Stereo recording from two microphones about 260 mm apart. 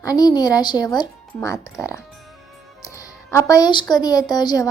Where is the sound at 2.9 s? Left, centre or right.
Centre.